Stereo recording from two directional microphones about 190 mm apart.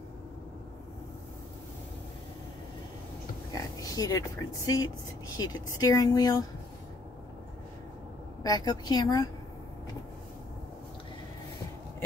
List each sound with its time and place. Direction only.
3.5 s speech: 20° left (ahead or behind)
8.4 s speech: 20° left (ahead or behind)